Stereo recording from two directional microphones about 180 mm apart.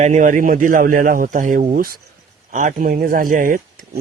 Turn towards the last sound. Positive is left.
turn(degrees=-50)  # may be behind; listen again after turning